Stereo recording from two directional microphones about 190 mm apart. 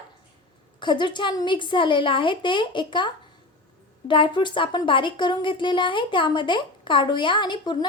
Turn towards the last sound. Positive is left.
turn(degrees=25)  # may be behind; listen again after turning